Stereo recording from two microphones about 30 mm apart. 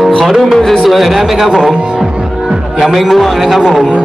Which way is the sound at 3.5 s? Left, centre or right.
Right.